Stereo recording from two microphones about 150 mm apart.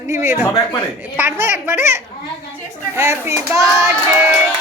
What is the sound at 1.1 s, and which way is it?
A man's voice, 15° right (ahead or behind).